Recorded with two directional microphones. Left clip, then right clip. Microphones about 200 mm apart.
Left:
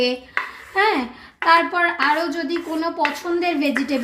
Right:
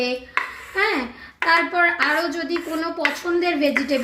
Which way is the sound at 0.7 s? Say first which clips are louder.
Left 3 dB; 55° left (ahead or behind).